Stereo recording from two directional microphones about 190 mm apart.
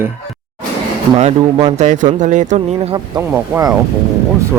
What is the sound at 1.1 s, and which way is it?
Speech, 35° right (ahead or behind).